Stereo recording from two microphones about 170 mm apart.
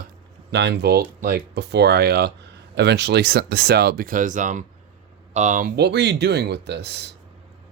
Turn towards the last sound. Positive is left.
turn(degrees=-75)  # may be behind; listen again after turning